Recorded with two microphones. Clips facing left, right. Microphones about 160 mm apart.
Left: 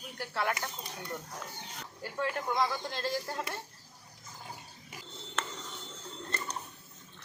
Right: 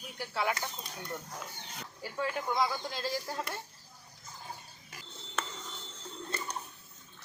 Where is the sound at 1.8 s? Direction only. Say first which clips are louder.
Left 1 dB; 5° right (ahead or behind).